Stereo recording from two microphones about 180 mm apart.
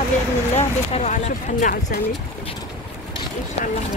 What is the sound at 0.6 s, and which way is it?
Speech, 40° left (ahead or behind).